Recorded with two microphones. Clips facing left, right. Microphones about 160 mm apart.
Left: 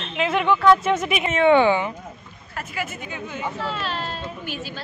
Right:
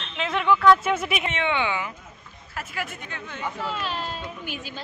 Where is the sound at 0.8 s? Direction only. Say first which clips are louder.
Left 3 dB; 5° right (ahead or behind).